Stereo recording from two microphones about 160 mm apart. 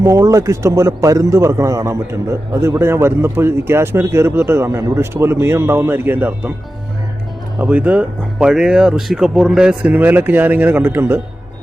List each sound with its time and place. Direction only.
0.0 s a man's voice: 20° right (ahead or behind)
7.6 s a man's voice: 10° right (ahead or behind)